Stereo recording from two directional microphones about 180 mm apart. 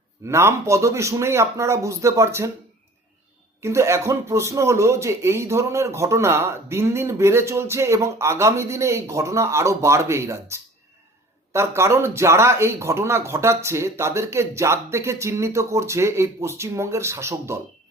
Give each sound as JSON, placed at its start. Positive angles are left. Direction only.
{"t": 0.3, "sound": "speech", "side_deg": -15}
{"t": 3.6, "sound": "speech", "side_deg": -15}